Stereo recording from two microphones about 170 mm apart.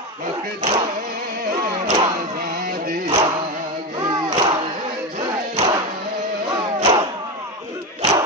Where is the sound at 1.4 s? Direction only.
55° right (ahead or behind).